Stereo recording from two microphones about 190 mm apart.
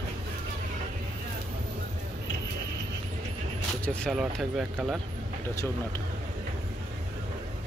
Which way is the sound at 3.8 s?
Centre (ahead or behind).